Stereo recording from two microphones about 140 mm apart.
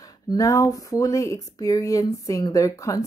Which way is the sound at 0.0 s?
25° left (ahead or behind).